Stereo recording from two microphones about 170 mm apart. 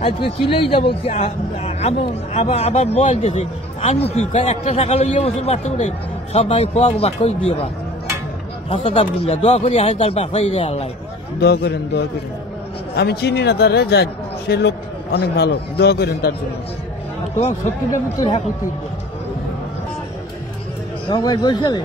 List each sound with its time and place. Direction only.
0.0 s a man's voice: 30° left (ahead or behind)
8.6 s a man's voice: 35° left (ahead or behind)
11.3 s a man's voice: 75° left (ahead or behind)
21.1 s speech: 25° left (ahead or behind)